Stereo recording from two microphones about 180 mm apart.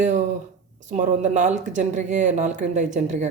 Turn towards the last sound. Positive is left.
turn(degrees=-40)  # may be behind; listen again after turning